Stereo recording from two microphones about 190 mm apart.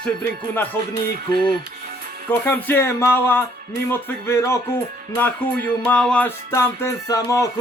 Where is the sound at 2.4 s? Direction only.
10° left (ahead or behind).